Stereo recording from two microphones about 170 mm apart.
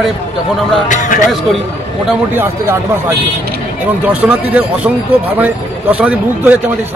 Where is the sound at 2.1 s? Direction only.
10° right (ahead or behind).